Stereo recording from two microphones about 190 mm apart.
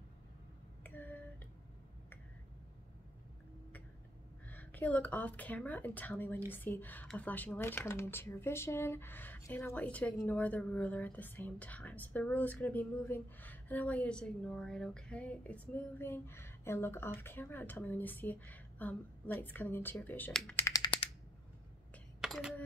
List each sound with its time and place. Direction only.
0.8 s finger snapping: 10° left (ahead or behind)
4.5 s speech: 10° left (ahead or behind)
20.6 s typewriter: 20° left (ahead or behind)
21.9 s a sound: centre (ahead or behind)